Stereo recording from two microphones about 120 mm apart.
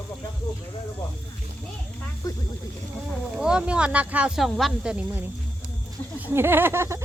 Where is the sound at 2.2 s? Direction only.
30° left (ahead or behind).